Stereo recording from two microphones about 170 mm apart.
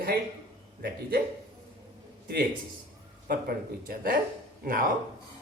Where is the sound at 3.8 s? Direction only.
60° right (ahead or behind).